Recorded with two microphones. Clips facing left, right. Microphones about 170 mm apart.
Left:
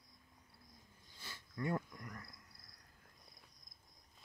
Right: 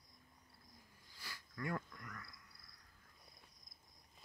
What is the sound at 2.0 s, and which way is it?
Cricket, 35° left (ahead or behind).